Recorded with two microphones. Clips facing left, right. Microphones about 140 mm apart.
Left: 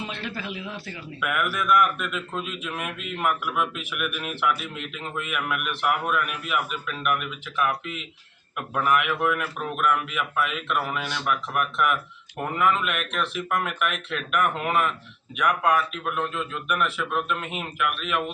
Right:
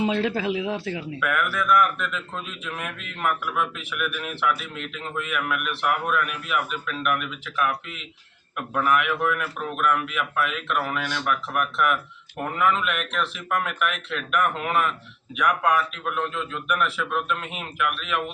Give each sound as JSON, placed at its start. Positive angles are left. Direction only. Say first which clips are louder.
{"t": 0.1, "sound": "speech", "louder": "right 10 dB", "side_deg": -90}
{"t": 1.2, "sound": "a man's voice", "louder": "even", "side_deg": 10}